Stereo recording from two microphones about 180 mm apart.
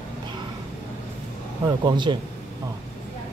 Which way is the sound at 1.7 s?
25° right (ahead or behind).